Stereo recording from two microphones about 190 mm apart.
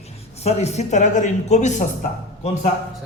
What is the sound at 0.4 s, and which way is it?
Speech, 35° left (ahead or behind).